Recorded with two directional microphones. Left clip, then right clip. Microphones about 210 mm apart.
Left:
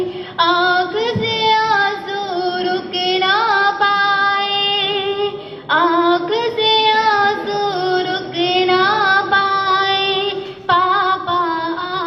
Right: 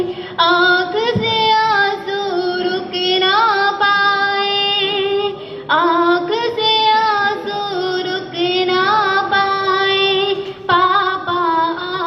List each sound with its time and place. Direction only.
0.3 s female singing: centre (ahead or behind)